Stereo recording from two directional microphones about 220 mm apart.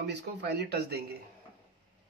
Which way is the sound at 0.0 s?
50° right (ahead or behind).